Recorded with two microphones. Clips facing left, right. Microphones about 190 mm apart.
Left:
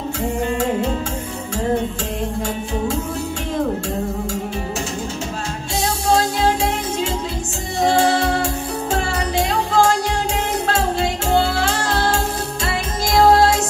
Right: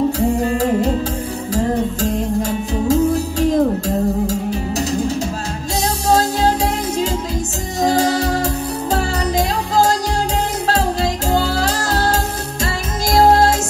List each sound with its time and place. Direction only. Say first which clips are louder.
0.4 s music: right 3 dB; 35° right (ahead or behind)
7.8 s music: even; 40° right (ahead or behind)
10.7 s music: right 3 dB; 35° right (ahead or behind)